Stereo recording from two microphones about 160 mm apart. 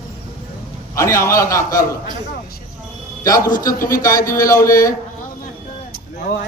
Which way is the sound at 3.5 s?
60° left (ahead or behind).